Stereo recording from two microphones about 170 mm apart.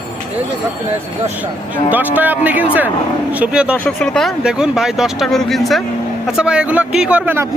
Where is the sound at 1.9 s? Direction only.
10° right (ahead or behind).